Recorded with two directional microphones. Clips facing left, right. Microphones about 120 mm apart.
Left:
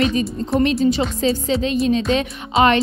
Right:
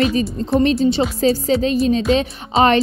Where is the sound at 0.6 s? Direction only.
30° right (ahead or behind).